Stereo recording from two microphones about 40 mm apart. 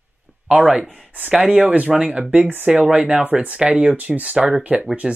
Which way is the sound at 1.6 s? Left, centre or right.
Right.